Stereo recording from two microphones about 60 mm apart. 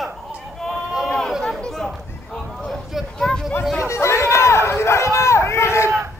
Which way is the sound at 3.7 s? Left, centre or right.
Left.